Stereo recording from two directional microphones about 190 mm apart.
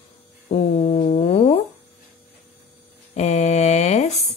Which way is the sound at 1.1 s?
30° left (ahead or behind).